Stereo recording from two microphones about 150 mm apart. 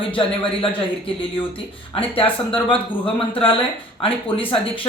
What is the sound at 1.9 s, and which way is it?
Speech, 35° left (ahead or behind).